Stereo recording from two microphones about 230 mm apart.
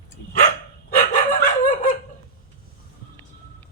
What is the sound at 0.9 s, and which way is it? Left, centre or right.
Bow-wow, left.